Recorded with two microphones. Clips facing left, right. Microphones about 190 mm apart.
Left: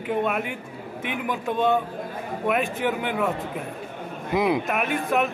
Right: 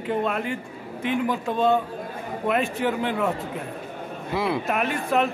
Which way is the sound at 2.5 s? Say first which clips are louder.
Right 1 dB; centre (ahead or behind).